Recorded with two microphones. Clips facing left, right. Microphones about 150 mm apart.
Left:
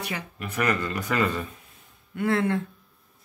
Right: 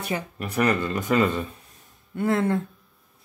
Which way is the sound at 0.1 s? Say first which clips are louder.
Right 5 dB; 35° right (ahead or behind).